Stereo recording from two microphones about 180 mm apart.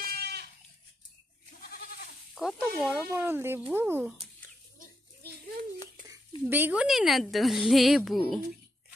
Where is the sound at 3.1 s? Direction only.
15° right (ahead or behind).